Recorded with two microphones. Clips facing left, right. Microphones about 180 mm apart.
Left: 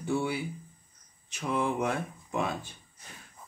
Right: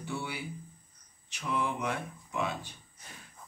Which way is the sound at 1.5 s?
45° left (ahead or behind).